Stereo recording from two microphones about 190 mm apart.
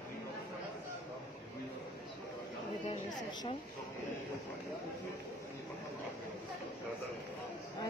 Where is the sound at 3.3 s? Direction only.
20° left (ahead or behind).